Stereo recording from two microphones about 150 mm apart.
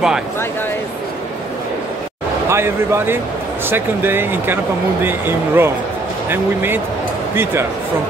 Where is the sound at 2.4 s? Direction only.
15° right (ahead or behind).